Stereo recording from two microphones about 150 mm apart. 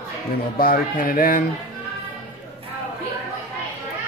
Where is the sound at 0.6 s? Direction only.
75° left (ahead or behind).